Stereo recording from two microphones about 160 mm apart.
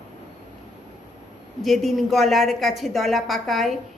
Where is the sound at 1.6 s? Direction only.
Centre (ahead or behind).